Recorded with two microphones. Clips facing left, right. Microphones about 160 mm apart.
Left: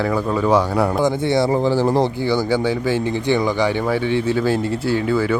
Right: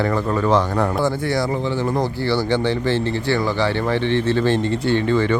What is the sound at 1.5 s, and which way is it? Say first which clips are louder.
Speech: left 5 dB; 35° left (ahead or behind).